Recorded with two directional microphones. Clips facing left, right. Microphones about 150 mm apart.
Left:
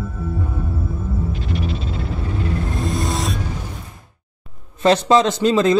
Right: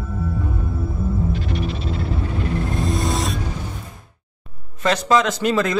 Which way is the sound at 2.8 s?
Centre (ahead or behind).